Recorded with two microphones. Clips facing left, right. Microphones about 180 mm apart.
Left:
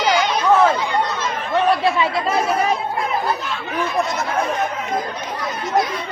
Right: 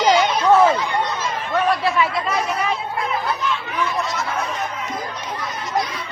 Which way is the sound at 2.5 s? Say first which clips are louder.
Left 4 dB; 45° left (ahead or behind).